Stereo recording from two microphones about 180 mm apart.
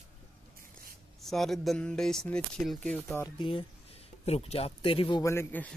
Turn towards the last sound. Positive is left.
turn(degrees=10)  # may be behind; listen again after turning